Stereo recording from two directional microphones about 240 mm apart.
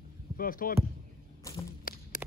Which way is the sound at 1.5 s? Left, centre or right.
Centre.